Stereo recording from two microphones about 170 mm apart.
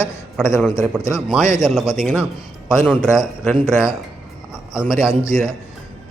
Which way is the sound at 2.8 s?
10° left (ahead or behind).